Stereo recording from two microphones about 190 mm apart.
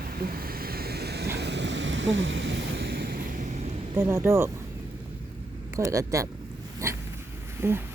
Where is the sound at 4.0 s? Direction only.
15° right (ahead or behind).